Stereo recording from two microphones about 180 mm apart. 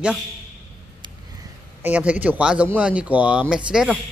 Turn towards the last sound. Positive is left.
turn(degrees=-5)  # may be behind; listen again after turning